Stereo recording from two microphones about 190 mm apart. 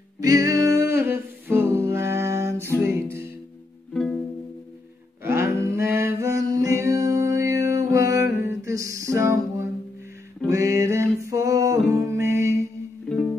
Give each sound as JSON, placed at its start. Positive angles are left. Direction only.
{"t": 0.2, "sound": "music", "side_deg": -20}
{"t": 3.9, "sound": "music", "side_deg": 0}
{"t": 5.2, "sound": "a sound", "side_deg": -15}
{"t": 10.5, "sound": "music", "side_deg": -15}
{"t": 13.1, "sound": "music", "side_deg": 5}